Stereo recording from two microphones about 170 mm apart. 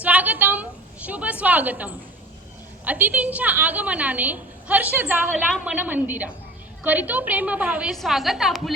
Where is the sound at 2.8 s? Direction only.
10° right (ahead or behind).